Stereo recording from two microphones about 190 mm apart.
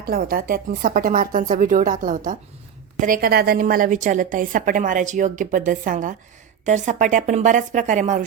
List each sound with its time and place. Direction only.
0.0 s a woman's voice: 50° right (ahead or behind)